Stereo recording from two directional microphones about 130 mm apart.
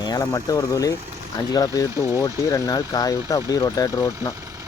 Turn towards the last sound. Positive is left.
turn(degrees=25)  # may be behind; listen again after turning